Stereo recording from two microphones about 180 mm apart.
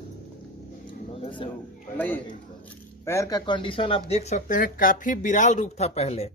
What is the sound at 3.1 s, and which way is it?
Speech, 20° left (ahead or behind).